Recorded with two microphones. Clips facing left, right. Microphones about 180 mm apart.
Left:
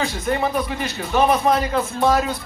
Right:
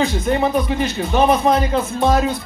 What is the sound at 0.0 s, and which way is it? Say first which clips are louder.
Speech: right 4 dB; 20° right (ahead or behind).